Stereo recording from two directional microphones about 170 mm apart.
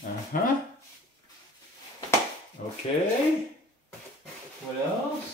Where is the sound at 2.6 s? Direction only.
55° left (ahead or behind).